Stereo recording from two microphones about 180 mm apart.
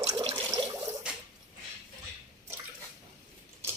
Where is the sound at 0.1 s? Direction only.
25° right (ahead or behind).